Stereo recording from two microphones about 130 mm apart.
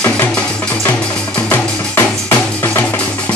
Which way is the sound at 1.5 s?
20° left (ahead or behind).